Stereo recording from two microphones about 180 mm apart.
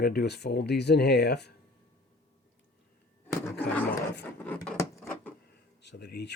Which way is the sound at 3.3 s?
15° left (ahead or behind).